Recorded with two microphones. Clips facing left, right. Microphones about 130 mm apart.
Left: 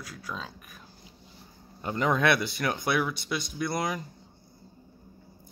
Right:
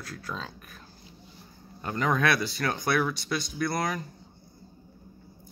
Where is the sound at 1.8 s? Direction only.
20° left (ahead or behind).